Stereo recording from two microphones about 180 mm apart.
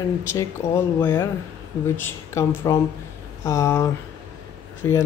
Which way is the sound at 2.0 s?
15° left (ahead or behind).